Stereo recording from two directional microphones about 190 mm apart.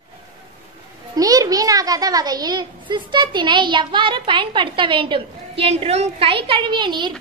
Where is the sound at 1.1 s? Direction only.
20° right (ahead or behind).